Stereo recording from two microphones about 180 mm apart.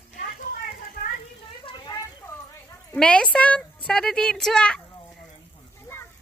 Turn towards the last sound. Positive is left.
turn(degrees=5)  # may be behind; listen again after turning